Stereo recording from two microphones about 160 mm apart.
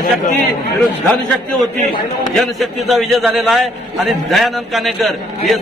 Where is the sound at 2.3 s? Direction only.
Centre (ahead or behind).